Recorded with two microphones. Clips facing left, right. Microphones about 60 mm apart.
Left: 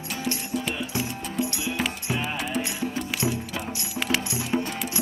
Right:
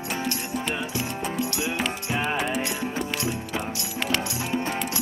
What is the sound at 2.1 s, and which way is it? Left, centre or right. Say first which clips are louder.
Music: right 3 dB; right.